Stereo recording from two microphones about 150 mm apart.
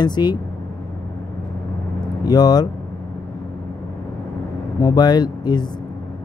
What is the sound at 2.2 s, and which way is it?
Speech, 25° left (ahead or behind).